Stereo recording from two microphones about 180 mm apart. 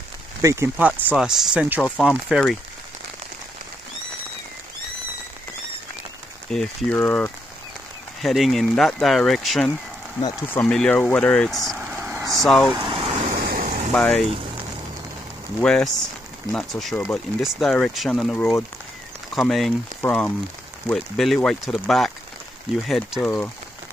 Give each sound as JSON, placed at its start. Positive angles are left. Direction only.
{"t": 0.4, "sound": "speech", "side_deg": -15}
{"t": 6.5, "sound": "speech", "side_deg": 0}
{"t": 11.8, "sound": "vehicle", "side_deg": -10}
{"t": 12.3, "sound": "speech", "side_deg": 0}
{"t": 12.7, "sound": "vehicle", "side_deg": -25}
{"t": 13.4, "sound": "vehicle", "side_deg": -50}
{"t": 13.9, "sound": "speech", "side_deg": 5}
{"t": 15.6, "sound": "speech", "side_deg": 5}